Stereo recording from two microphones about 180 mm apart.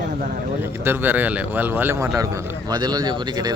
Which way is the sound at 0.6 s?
10° right (ahead or behind).